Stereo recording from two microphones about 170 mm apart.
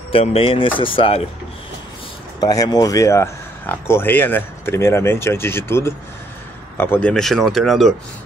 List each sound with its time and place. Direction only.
0.1 s speech: 35° left (ahead or behind)
2.4 s speech: 20° left (ahead or behind); by 7.9 s centre (ahead or behind)